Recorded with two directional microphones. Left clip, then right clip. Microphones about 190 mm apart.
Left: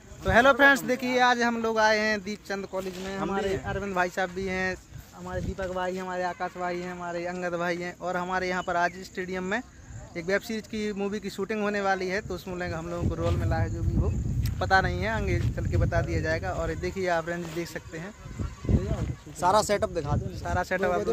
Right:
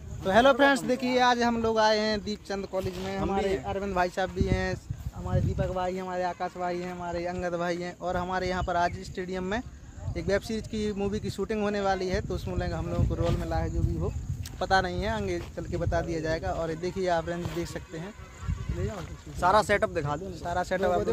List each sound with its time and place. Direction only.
0.2 s speech: 10° left (ahead or behind)
2.8 s speech: 5° right (ahead or behind); by 18.0 s 15° left (ahead or behind)
19.4 s speech: 30° left (ahead or behind)
19.9 s speech: 15° left (ahead or behind)